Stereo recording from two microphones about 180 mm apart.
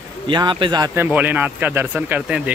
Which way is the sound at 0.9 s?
10° right (ahead or behind).